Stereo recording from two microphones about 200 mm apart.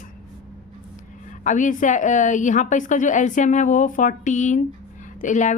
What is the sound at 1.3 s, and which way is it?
A woman's voice, 40° left (ahead or behind).